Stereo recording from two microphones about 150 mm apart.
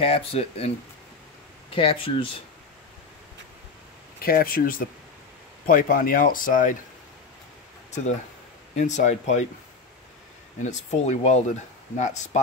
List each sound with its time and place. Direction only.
0.0 s speech: 40° left (ahead or behind)
1.8 s speech: 35° left (ahead or behind)
4.2 s speech: 75° left (ahead or behind)
8.7 s speech: 50° left (ahead or behind)
10.6 s speech: 50° left (ahead or behind)